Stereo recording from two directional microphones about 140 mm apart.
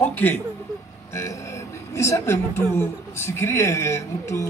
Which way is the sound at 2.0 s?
20° left (ahead or behind).